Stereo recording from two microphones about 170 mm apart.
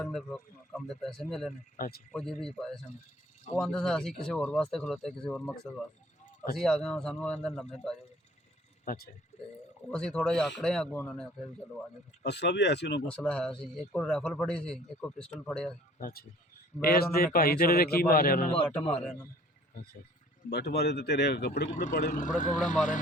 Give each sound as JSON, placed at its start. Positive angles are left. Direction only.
{"t": 0.0, "sound": "speech", "side_deg": 0}
{"t": 1.7, "sound": "a man's voice", "side_deg": 55}
{"t": 2.1, "sound": "speech", "side_deg": 5}
{"t": 8.8, "sound": "speech", "side_deg": 55}
{"t": 9.8, "sound": "speech", "side_deg": 5}
{"t": 12.2, "sound": "speech", "side_deg": 80}
{"t": 13.1, "sound": "speech", "side_deg": 5}
{"t": 16.0, "sound": "a man's voice", "side_deg": 60}
{"t": 18.9, "sound": "a man's voice", "side_deg": 10}
{"t": 19.7, "sound": "a man's voice", "side_deg": 65}
{"t": 20.5, "sound": "speech", "side_deg": 75}
{"t": 22.0, "sound": "speech", "side_deg": 50}